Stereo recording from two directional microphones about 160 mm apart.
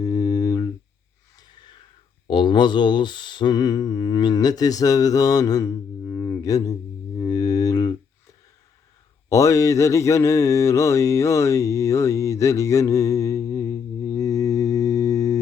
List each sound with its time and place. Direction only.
0.0 s a sound: 20° left (ahead or behind)
2.2 s speech: 30° left (ahead or behind)
7.2 s music: 20° left (ahead or behind)
9.3 s mantra: 20° left (ahead or behind)